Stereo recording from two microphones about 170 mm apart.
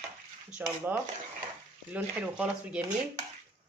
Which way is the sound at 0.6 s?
10° right (ahead or behind).